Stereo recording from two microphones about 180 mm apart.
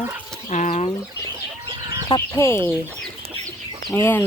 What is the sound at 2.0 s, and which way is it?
Speech, 20° left (ahead or behind).